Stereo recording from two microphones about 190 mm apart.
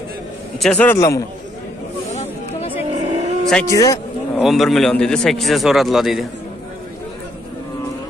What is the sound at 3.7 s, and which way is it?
Speech, 15° left (ahead or behind).